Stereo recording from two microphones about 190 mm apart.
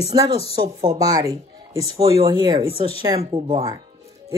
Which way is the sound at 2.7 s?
30° left (ahead or behind).